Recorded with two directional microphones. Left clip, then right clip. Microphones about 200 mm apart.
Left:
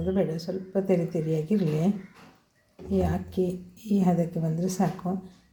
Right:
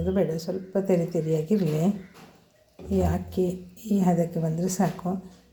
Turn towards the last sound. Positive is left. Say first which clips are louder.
# right 1 dB
turn(degrees=-5)  # may be behind; listen again after turning